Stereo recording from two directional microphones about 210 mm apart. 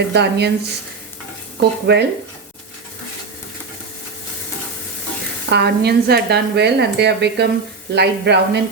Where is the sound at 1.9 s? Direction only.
50° right (ahead or behind).